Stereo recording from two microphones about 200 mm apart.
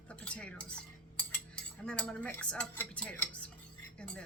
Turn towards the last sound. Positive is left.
turn(degrees=5)  # may be behind; listen again after turning